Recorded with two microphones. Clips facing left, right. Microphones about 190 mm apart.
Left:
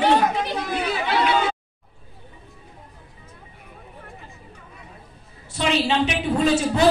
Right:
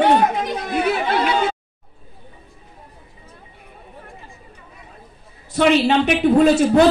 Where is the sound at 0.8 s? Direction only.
55° right (ahead or behind).